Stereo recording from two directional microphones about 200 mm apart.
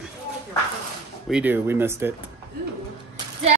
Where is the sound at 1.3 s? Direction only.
10° right (ahead or behind).